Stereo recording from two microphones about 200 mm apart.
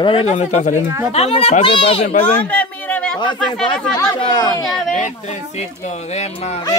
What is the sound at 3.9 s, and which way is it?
Speech, 20° left (ahead or behind).